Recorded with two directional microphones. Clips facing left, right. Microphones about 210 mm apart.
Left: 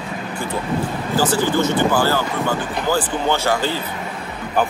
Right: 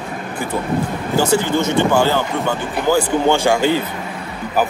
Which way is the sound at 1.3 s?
20° right (ahead or behind).